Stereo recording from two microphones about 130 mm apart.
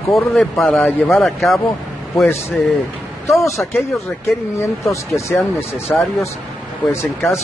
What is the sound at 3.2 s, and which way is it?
Speech, 25° left (ahead or behind).